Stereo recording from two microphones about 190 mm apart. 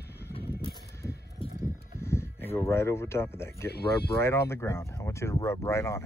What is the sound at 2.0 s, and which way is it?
Speech, 15° left (ahead or behind).